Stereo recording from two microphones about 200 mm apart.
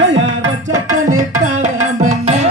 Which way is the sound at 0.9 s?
90° right.